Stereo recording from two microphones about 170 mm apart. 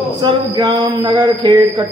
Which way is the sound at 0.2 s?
25° right (ahead or behind).